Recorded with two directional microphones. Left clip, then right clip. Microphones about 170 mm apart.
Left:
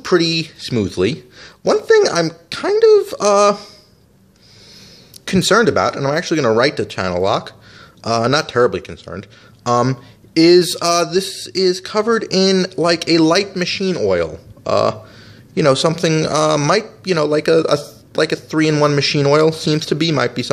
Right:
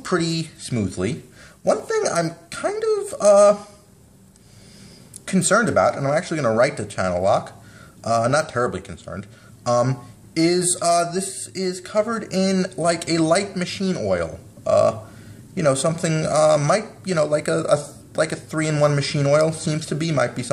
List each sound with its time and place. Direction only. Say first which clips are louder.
0.0 s speech: left 8 dB; 35° left (ahead or behind)
5.2 s speech: left 6 dB; 40° left (ahead or behind)